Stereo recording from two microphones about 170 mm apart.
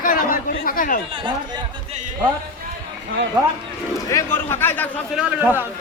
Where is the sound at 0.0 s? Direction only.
55° left (ahead or behind).